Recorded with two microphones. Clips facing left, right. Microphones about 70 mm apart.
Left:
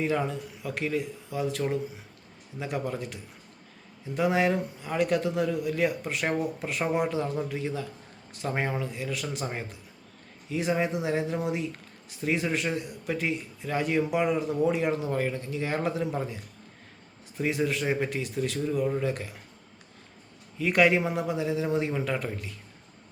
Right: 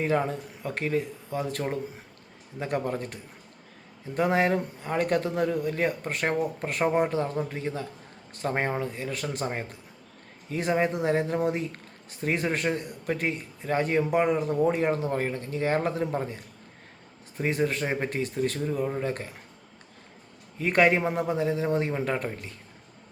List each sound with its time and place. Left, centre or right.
0.0 s speech: right
10.5 s speech: right
20.6 s speech: right